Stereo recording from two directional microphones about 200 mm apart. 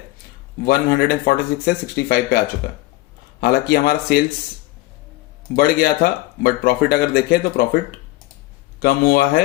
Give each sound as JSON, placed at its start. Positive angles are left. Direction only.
{"t": 0.6, "sound": "speech", "side_deg": 45}
{"t": 3.4, "sound": "speech", "side_deg": 50}
{"t": 5.5, "sound": "speech", "side_deg": 45}
{"t": 8.8, "sound": "speech", "side_deg": 50}